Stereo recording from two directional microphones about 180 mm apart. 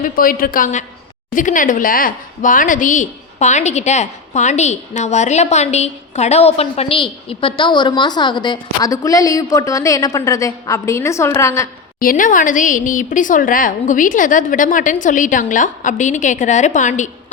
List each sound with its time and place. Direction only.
0.0 s a woman's voice: 50° left (ahead or behind); by 11.7 s 15° left (ahead or behind)
11.9 s a woman's voice: 50° left (ahead or behind)